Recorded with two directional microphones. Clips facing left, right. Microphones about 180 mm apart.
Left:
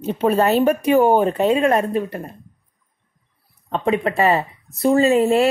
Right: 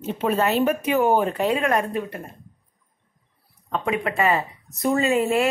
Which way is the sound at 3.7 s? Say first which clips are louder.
Left 5 dB; 30° left (ahead or behind).